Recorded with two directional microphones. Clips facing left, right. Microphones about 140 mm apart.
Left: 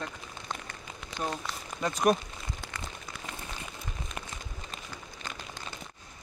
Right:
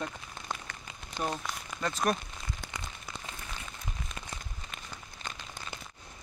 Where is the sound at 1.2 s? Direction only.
5° right (ahead or behind).